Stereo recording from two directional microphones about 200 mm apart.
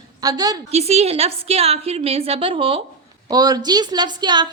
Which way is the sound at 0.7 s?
30° right (ahead or behind).